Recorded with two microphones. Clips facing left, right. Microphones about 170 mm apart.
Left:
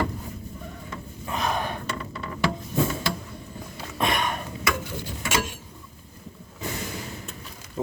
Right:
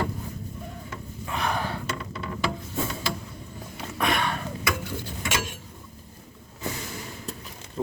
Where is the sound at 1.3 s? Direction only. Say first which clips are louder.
Left 1 dB; 20° left (ahead or behind).